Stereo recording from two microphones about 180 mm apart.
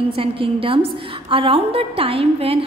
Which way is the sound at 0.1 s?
30° right (ahead or behind).